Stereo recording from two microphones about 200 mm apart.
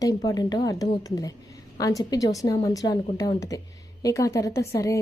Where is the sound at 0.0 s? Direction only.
15° left (ahead or behind).